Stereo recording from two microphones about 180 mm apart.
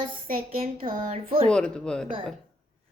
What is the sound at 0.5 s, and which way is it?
Speech, 30° right (ahead or behind).